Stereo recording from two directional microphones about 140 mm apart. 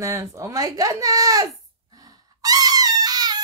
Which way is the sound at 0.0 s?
20° right (ahead or behind).